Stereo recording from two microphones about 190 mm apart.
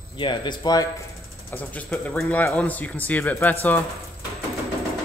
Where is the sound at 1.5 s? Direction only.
10° left (ahead or behind).